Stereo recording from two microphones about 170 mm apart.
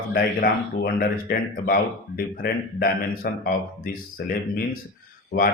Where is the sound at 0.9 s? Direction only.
60° left (ahead or behind).